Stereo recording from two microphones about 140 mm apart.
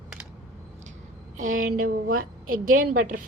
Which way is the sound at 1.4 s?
65° right (ahead or behind).